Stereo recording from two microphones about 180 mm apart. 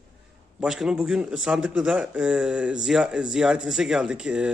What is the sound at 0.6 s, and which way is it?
A man's voice, 5° right (ahead or behind).